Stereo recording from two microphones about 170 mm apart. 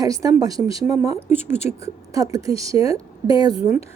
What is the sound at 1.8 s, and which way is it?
A woman's voice, 20° right (ahead or behind).